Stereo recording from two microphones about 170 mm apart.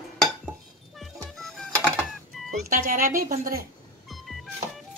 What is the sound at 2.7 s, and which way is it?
Speech, 55° right (ahead or behind).